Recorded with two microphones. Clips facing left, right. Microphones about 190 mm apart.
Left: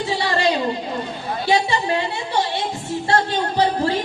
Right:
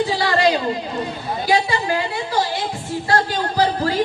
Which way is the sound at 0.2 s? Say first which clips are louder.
Right 1 dB; 30° left (ahead or behind).